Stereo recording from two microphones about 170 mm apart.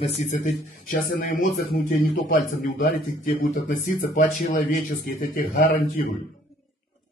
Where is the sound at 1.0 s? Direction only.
60° left (ahead or behind).